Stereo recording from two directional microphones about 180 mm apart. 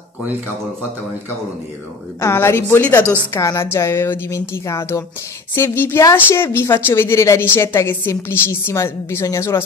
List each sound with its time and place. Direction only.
2.1 s a woman's voice: 15° left (ahead or behind)